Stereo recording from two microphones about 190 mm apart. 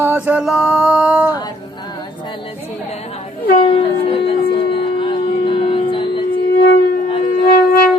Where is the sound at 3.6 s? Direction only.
30° left (ahead or behind).